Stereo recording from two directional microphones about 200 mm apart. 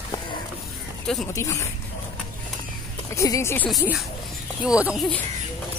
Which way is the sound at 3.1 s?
15° left (ahead or behind).